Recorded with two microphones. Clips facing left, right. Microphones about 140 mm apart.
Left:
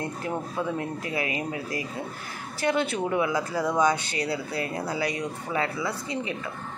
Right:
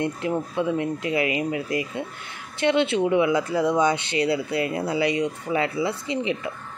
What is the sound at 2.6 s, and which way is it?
Speech, 45° left (ahead or behind).